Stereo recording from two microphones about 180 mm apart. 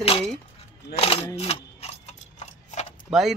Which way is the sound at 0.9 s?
60° left (ahead or behind).